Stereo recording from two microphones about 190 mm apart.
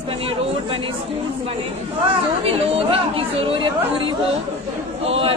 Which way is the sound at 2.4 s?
30° right (ahead or behind).